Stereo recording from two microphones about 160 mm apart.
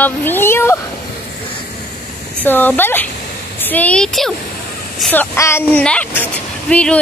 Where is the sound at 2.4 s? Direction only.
10° left (ahead or behind).